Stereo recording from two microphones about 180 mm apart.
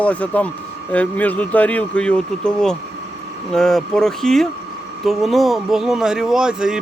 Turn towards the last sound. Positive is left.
turn(degrees=-5)  # may be behind; listen again after turning